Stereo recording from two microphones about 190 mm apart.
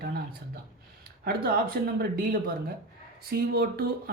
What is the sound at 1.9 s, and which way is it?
Speech, 50° right (ahead or behind).